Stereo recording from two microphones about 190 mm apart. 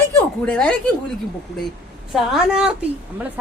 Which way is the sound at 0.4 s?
5° left (ahead or behind).